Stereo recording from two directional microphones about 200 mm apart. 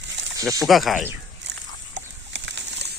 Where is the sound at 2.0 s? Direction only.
65° right (ahead or behind).